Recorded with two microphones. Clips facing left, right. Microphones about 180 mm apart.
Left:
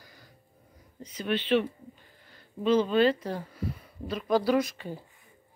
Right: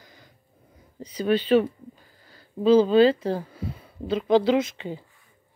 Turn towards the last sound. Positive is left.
turn(degrees=-20)  # may be behind; listen again after turning